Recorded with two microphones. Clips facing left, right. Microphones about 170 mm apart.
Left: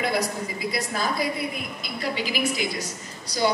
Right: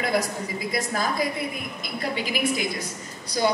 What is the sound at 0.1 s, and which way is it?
A woman's voice, 45° right (ahead or behind).